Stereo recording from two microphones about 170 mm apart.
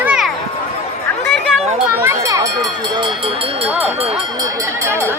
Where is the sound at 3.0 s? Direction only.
30° right (ahead or behind).